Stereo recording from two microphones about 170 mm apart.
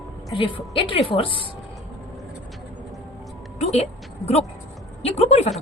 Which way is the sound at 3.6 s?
40° left (ahead or behind).